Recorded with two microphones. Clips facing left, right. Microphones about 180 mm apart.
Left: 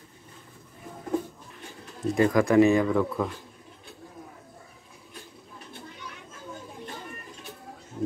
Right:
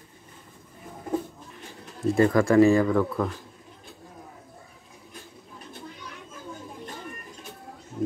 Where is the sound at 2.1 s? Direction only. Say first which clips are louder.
Right 1 dB; 15° left (ahead or behind).